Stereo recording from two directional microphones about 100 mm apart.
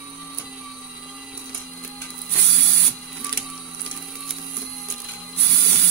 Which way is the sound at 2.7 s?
20° left (ahead or behind).